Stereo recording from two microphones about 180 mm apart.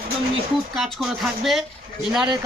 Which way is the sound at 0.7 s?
Centre (ahead or behind).